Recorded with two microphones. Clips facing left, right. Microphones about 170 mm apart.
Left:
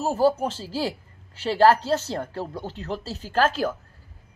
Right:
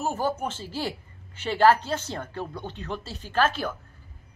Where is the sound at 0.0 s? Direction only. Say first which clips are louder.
Left 6 dB; 35° left (ahead or behind).